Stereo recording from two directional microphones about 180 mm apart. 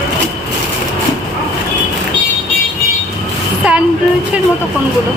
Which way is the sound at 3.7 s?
5° right (ahead or behind).